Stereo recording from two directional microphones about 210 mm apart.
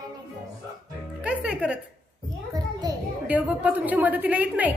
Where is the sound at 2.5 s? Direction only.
20° right (ahead or behind).